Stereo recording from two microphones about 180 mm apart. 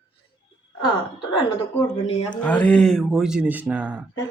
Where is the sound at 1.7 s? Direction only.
20° left (ahead or behind).